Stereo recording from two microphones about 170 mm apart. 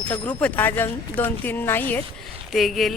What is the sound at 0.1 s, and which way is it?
Speech, 10° left (ahead or behind).